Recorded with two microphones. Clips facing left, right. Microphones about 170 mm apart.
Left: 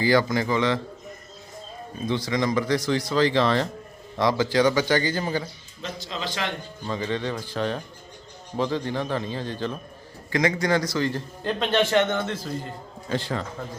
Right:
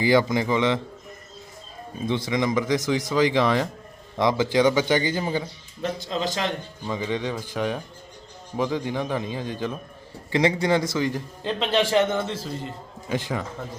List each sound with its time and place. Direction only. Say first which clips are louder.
0.0 s speech: right 1 dB; 20° right (ahead or behind)
2.0 s speech: right 1 dB; 20° right (ahead or behind)
5.8 s a man's voice: right 6 dB; 55° right (ahead or behind)
6.1 s a man's voice: right 3 dB; 35° right (ahead or behind)
6.8 s speech: even; 15° right (ahead or behind)
10.3 s speech: right 2 dB; 25° right (ahead or behind)
11.4 s a man's voice: even; 5° right (ahead or behind)